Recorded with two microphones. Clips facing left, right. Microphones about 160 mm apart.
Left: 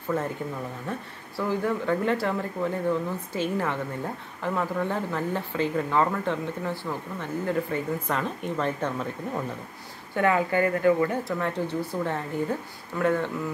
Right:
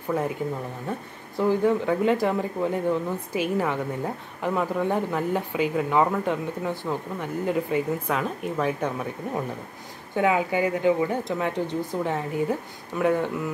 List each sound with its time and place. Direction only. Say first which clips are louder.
1.3 s speech: right 5 dB; 20° right (ahead or behind)